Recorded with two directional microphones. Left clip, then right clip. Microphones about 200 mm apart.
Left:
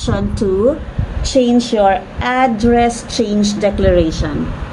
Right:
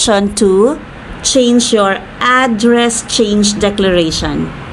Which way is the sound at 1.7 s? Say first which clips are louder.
Right 1 dB; 35° right (ahead or behind).